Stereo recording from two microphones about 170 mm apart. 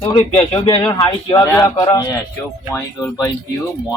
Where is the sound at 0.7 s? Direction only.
25° left (ahead or behind).